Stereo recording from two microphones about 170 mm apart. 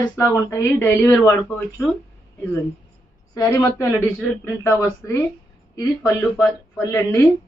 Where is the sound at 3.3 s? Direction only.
20° left (ahead or behind).